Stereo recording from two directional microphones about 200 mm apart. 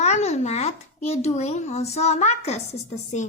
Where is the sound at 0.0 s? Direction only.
35° left (ahead or behind).